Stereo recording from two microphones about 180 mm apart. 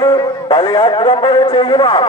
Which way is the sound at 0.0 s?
20° left (ahead or behind).